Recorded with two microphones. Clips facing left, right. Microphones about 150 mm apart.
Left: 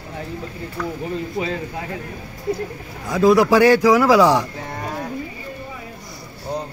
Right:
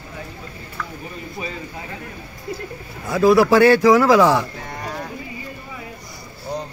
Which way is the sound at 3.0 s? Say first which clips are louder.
Even; 15° left (ahead or behind).